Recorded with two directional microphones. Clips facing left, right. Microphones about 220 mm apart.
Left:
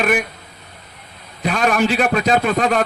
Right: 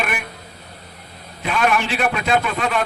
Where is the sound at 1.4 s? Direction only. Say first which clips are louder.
Left 3 dB; 40° left (ahead or behind).